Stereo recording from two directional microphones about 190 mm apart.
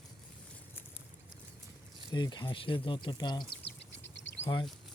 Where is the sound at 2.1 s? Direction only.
20° left (ahead or behind).